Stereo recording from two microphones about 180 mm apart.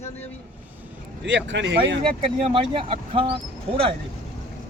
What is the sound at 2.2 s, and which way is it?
Speech, 30° right (ahead or behind).